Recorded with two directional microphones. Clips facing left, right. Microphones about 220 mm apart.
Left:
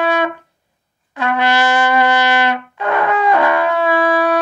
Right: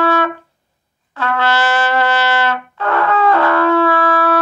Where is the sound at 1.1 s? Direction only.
15° left (ahead or behind).